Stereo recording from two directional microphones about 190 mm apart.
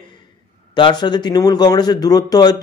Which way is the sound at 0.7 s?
25° left (ahead or behind).